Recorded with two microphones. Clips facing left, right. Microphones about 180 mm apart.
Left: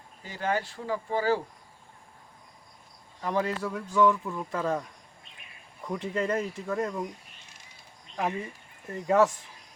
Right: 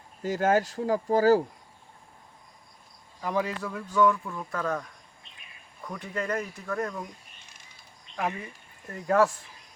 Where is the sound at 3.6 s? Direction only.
10° left (ahead or behind).